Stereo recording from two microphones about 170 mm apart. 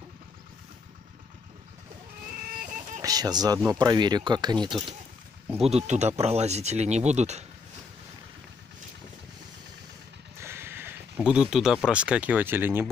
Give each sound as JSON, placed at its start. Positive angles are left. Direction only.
{"t": 2.6, "sound": "a sound", "side_deg": -50}
{"t": 3.0, "sound": "speech", "side_deg": -20}
{"t": 5.6, "sound": "speech", "side_deg": -40}
{"t": 10.4, "sound": "speech", "side_deg": -15}